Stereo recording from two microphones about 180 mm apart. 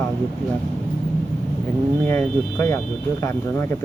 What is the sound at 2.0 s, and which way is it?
Speech, 10° left (ahead or behind).